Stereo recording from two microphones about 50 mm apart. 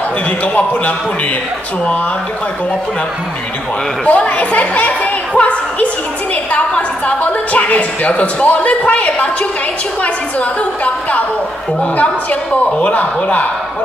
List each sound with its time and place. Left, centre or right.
4.0 s a woman's voice: left
10.6 s a woman's voice: left